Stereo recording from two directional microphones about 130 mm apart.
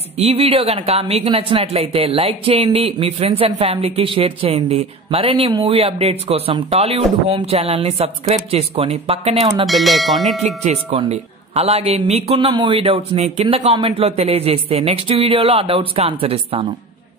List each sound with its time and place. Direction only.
0.2 s speech: 50° right (ahead or behind)
9.7 s speech: centre (ahead or behind)
10.4 s speech: 60° right (ahead or behind)
12.4 s speech: 35° right (ahead or behind)